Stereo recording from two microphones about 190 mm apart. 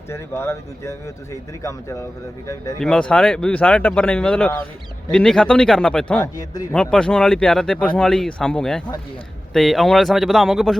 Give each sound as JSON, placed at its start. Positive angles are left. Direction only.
{"t": 0.1, "sound": "speech", "side_deg": 15}
{"t": 2.8, "sound": "speech", "side_deg": 5}
{"t": 6.3, "sound": "speech", "side_deg": 20}
{"t": 6.7, "sound": "speech", "side_deg": 5}